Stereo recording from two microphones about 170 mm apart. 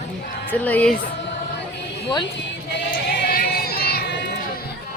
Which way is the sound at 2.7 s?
85° left.